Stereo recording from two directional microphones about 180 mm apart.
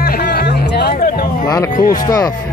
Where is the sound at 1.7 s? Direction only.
50° left (ahead or behind).